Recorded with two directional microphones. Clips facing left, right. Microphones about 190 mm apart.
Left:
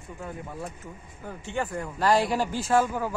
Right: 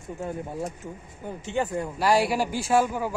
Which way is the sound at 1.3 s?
20° right (ahead or behind).